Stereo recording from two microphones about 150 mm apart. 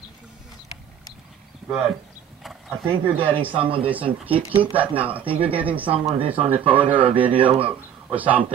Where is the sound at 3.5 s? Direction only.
35° right (ahead or behind).